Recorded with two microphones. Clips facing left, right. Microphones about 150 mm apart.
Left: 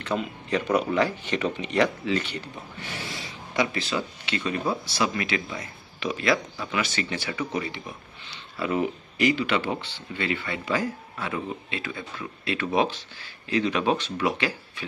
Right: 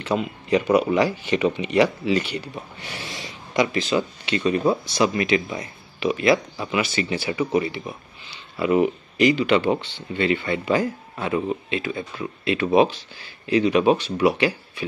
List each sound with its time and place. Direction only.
0.0 s speech: 10° right (ahead or behind)
8.3 s a sound: 15° right (ahead or behind)
8.8 s speech: 15° right (ahead or behind)